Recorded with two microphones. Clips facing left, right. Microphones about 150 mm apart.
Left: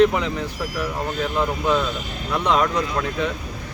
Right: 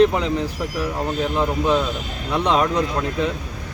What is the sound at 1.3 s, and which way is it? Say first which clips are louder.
Speech: right 1 dB; 25° right (ahead or behind).